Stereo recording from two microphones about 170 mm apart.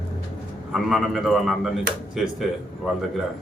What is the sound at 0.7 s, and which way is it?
Speech, centre (ahead or behind).